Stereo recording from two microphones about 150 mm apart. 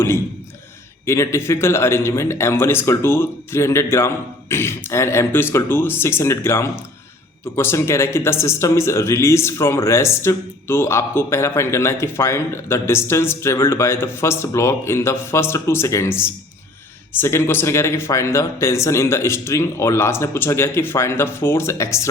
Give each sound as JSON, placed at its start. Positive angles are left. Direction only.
{"t": 1.0, "sound": "speech", "side_deg": 20}